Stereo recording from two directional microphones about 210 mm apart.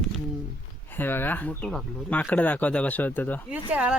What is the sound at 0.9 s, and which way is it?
Speech, 10° left (ahead or behind).